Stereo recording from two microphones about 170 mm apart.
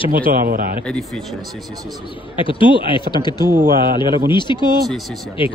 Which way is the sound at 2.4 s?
30° left (ahead or behind).